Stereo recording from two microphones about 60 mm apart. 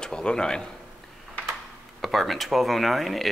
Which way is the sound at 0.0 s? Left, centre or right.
Centre.